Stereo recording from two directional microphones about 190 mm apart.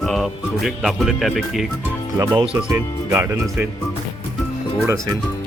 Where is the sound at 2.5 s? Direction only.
10° right (ahead or behind).